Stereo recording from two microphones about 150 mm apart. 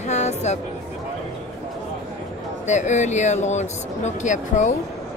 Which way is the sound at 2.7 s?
50° left (ahead or behind).